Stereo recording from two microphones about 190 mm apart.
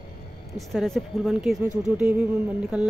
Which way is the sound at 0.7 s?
Centre (ahead or behind).